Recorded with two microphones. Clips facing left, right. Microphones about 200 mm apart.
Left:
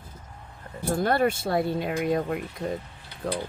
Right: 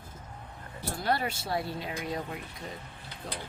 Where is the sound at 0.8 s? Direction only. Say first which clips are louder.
Left 8 dB; 50° left (ahead or behind).